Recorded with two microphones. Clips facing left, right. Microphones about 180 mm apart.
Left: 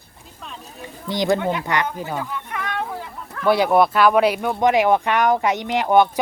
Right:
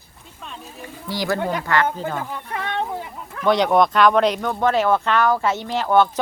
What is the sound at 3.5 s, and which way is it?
Speech, 5° left (ahead or behind).